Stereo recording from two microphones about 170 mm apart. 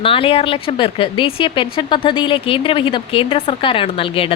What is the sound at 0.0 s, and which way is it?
A woman's voice, 30° left (ahead or behind).